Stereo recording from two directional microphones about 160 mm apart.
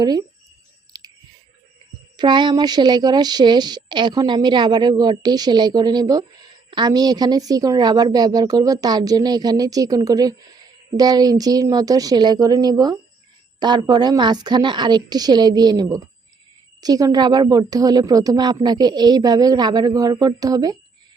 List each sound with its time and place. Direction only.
0.0 s speech: 25° right (ahead or behind)
0.9 s chewing: 25° right (ahead or behind)
2.1 s speech: 30° right (ahead or behind)